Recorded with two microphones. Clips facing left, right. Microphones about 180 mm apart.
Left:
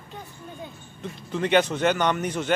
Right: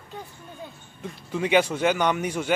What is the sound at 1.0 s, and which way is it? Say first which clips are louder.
A man's voice: even; 10° right (ahead or behind).